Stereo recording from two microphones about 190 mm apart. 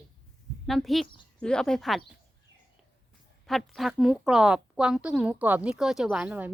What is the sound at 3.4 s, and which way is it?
A woman's voice, centre (ahead or behind).